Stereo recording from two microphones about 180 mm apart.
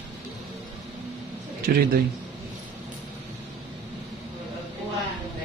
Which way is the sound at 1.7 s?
55° right (ahead or behind).